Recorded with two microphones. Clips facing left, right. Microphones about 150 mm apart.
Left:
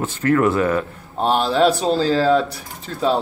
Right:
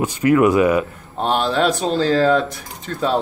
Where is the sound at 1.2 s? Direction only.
5° left (ahead or behind).